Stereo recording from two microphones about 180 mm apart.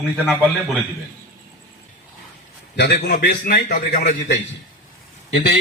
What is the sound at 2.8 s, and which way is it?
A man's voice, 65° left (ahead or behind).